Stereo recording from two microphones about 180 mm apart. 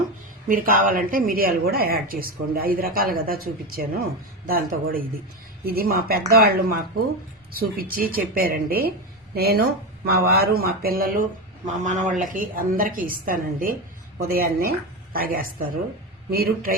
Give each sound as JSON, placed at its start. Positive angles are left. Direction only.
{"t": 0.4, "sound": "speech", "side_deg": -50}